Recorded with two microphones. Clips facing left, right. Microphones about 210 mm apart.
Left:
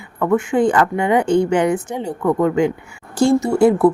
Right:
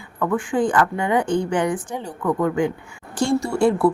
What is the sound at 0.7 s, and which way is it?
A woman's voice, 20° left (ahead or behind).